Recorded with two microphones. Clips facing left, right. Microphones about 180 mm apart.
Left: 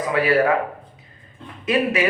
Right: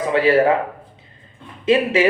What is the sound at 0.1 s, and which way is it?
Speech, 25° right (ahead or behind).